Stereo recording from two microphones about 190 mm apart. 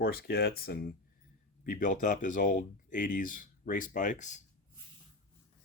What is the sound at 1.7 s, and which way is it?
Speech, 45° left (ahead or behind).